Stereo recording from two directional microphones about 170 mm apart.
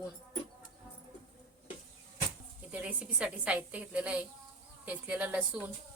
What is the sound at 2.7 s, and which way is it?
A woman's voice, 10° right (ahead or behind).